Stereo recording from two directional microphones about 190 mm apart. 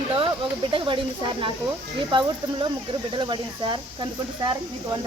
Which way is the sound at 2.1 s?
25° right (ahead or behind).